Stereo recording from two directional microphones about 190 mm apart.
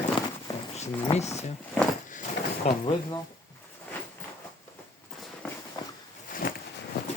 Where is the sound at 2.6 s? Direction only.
30° left (ahead or behind).